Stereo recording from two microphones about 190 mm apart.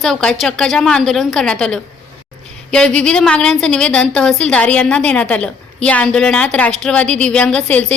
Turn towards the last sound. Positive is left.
turn(degrees=5)  # may be behind; listen again after turning